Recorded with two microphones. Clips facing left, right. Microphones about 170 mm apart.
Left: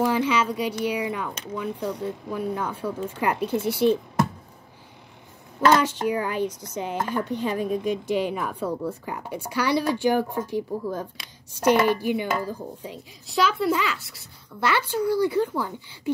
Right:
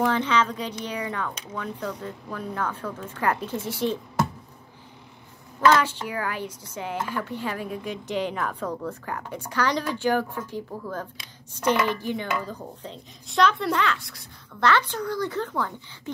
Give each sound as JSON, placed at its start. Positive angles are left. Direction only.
{"t": 0.0, "sound": "speech", "side_deg": 10}
{"t": 5.7, "sound": "speech", "side_deg": 15}